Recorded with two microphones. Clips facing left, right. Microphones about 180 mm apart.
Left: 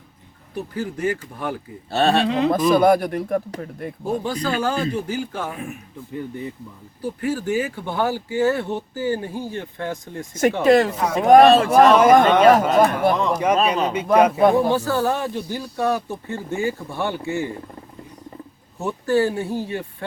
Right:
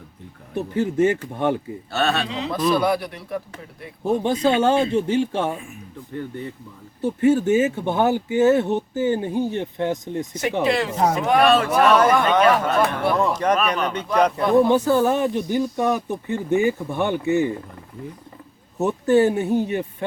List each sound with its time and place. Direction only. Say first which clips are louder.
0.5 s speech: right 6 dB; 25° right (ahead or behind)
1.9 s speech: left 4 dB; 30° left (ahead or behind)
2.2 s speech: left 5 dB; 55° left (ahead or behind)
4.4 s speech: right 6 dB; 25° right (ahead or behind)
6.1 s speech: even; 10° left (ahead or behind)
7.0 s speech: right 7 dB; 25° right (ahead or behind)
10.6 s speech: left 3 dB; 45° left (ahead or behind)
11.5 s speech: left 3 dB; 30° left (ahead or behind)
12.4 s speech: left 4 dB; 40° left (ahead or behind)
13.3 s speech: left 1 dB; 10° left (ahead or behind)
13.6 s speech: left 3 dB; 30° left (ahead or behind)
14.2 s speech: left 2 dB; 5° left (ahead or behind)
14.7 s speech: right 3 dB; 20° right (ahead or behind)
18.8 s speech: right 3 dB; 20° right (ahead or behind)